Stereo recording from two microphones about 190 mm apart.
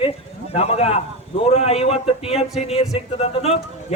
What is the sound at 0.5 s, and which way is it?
A man's voice, 30° left (ahead or behind).